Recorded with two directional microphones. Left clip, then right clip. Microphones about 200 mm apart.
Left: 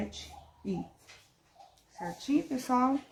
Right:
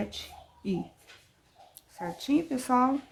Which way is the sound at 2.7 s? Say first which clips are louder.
Right 3 dB; 10° right (ahead or behind).